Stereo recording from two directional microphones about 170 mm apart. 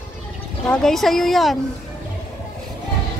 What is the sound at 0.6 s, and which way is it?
Speech, centre (ahead or behind).